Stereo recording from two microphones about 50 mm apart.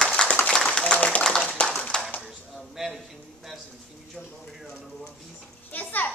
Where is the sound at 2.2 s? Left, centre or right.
Centre.